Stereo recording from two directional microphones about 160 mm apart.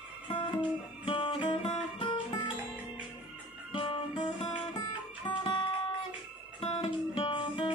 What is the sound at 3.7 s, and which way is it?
Guitar, 30° left (ahead or behind).